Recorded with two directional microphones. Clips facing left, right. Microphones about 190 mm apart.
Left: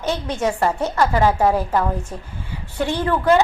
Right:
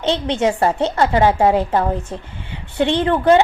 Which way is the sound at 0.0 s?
25° right (ahead or behind).